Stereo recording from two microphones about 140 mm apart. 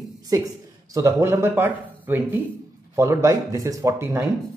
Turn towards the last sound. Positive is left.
turn(degrees=-20)  # may be behind; listen again after turning